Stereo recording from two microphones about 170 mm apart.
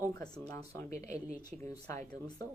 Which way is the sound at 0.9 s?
40° right (ahead or behind).